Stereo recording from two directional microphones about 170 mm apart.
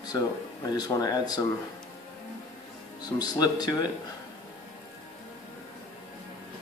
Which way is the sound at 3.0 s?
25° left (ahead or behind).